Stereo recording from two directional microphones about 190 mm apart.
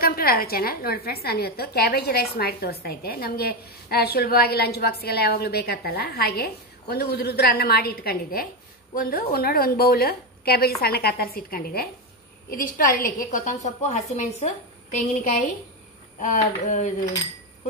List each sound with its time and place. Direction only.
0.0 s a woman's voice: 50° left (ahead or behind)
16.2 s speech: 40° left (ahead or behind)